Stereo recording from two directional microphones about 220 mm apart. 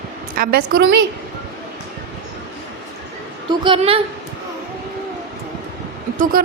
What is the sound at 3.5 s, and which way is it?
Speech, 20° right (ahead or behind).